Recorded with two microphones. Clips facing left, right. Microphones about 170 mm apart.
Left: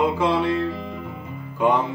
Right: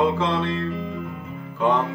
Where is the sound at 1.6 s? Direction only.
10° left (ahead or behind).